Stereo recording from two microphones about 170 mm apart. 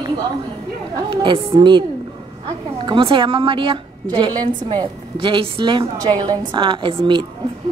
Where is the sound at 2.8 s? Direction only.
30° right (ahead or behind).